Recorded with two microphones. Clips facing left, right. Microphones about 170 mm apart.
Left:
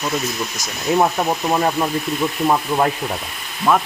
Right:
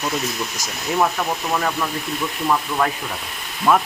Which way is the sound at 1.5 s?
30° left (ahead or behind).